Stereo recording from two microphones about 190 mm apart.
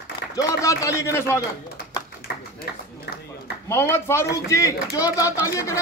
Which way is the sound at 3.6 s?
15° left (ahead or behind).